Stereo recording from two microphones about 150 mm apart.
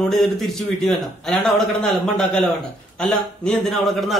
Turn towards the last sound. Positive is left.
turn(degrees=0)  # may be behind; listen again after turning